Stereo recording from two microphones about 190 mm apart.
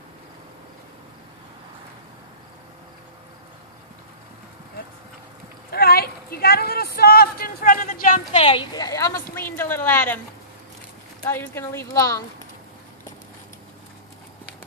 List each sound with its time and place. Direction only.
5.7 s a sound: 55° left (ahead or behind)
8.3 s a woman's voice: 30° left (ahead or behind); by 10.2 s 10° left (ahead or behind)
11.2 s a woman's voice: 10° left (ahead or behind)